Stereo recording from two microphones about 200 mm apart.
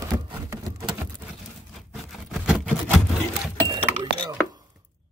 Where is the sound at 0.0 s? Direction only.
15° right (ahead or behind).